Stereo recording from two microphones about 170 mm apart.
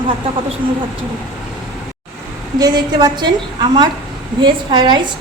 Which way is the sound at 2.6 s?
25° right (ahead or behind).